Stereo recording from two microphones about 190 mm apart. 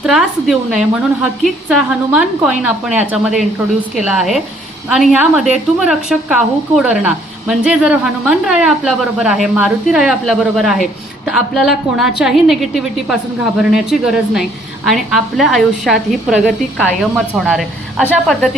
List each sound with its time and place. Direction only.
0.0 s a woman's voice: centre (ahead or behind)